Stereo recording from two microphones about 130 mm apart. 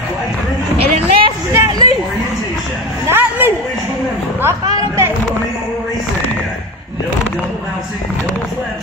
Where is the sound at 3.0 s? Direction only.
15° right (ahead or behind).